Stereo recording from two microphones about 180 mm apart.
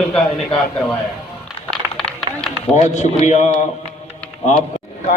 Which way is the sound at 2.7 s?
40° left (ahead or behind).